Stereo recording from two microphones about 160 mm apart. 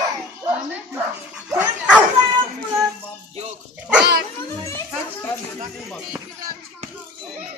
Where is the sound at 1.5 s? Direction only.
5° right (ahead or behind).